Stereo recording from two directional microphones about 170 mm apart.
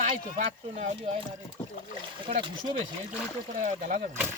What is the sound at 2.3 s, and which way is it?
Speech, 40° right (ahead or behind).